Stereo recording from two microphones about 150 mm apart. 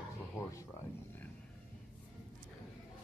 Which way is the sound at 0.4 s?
20° left (ahead or behind).